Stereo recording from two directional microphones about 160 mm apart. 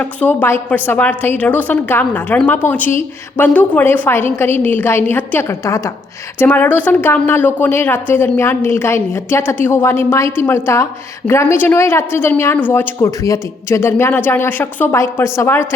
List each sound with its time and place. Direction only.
0.0 s a woman's voice: 10° left (ahead or behind)